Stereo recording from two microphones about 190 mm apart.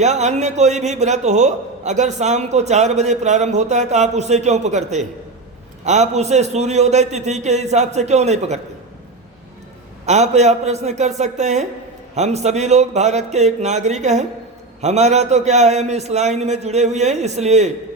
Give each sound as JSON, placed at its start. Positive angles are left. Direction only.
{"t": 0.0, "sound": "a man's voice", "side_deg": -35}
{"t": 10.1, "sound": "a man's voice", "side_deg": -35}